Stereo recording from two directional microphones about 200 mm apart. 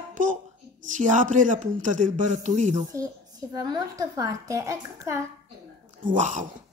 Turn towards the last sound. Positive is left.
turn(degrees=-40)  # may be behind; listen again after turning